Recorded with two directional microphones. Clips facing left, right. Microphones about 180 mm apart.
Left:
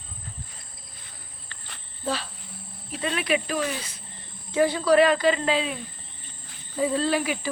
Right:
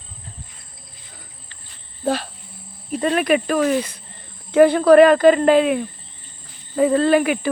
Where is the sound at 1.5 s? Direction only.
70° left (ahead or behind).